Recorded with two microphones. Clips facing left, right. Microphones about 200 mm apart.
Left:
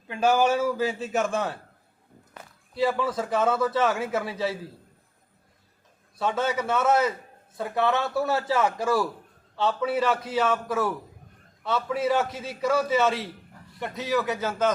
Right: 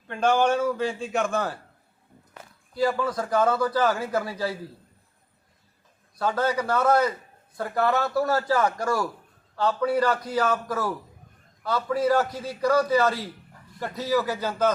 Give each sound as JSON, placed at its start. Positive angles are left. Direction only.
{"t": 0.1, "sound": "a man's voice", "side_deg": 5}
{"t": 2.7, "sound": "a man's voice", "side_deg": 0}
{"t": 6.4, "sound": "a man's voice", "side_deg": 0}